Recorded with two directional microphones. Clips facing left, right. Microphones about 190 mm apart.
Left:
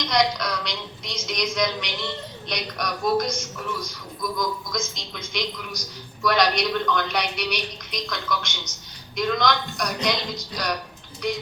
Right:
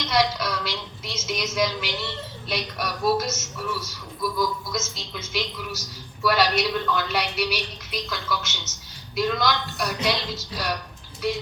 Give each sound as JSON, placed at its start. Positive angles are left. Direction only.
{"t": 0.1, "sound": "a woman's voice", "side_deg": -5}